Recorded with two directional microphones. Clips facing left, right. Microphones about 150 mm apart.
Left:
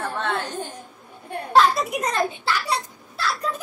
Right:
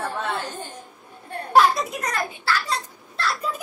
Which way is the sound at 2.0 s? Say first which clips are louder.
Left 4 dB; 20° left (ahead or behind).